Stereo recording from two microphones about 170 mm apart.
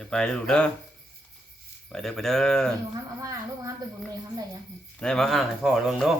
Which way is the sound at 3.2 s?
20° right (ahead or behind).